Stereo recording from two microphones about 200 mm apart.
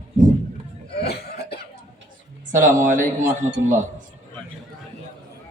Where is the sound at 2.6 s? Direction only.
40° right (ahead or behind).